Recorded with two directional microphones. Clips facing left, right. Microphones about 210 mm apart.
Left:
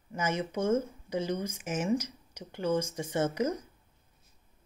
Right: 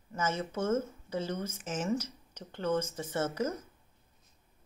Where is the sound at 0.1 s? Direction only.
15° left (ahead or behind).